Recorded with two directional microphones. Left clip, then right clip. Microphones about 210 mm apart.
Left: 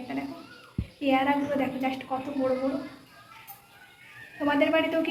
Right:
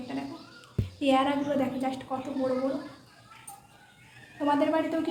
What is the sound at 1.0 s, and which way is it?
Speech, 10° right (ahead or behind).